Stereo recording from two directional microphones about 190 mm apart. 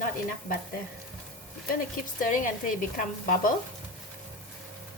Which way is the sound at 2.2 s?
45° left (ahead or behind).